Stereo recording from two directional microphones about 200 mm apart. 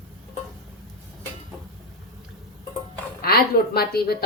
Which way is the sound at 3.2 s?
50° left (ahead or behind).